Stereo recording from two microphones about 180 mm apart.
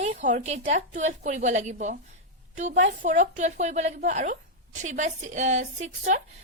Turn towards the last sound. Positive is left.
turn(degrees=-40)  # may be behind; listen again after turning